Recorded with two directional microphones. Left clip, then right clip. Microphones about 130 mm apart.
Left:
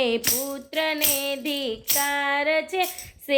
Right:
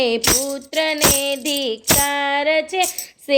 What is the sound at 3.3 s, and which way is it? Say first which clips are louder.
Female singing: right 5 dB; 35° right (ahead or behind).